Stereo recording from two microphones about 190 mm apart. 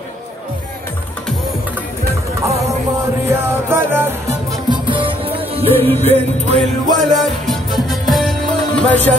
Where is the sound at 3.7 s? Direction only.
10° right (ahead or behind); by 6.6 s 35° right (ahead or behind).